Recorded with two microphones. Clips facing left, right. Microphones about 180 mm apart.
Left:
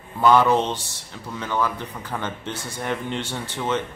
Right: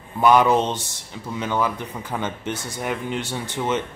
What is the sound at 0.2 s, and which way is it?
Speech, 15° right (ahead or behind).